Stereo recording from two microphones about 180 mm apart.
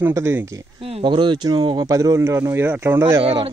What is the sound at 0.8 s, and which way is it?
Speech, 30° right (ahead or behind).